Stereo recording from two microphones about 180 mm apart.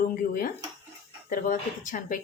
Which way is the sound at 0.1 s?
50° left (ahead or behind).